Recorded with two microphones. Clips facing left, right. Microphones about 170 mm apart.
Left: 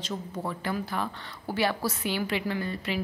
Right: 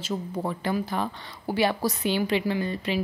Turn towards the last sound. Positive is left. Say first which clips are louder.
# right 4 dB
turn(degrees=-20)  # may be behind; listen again after turning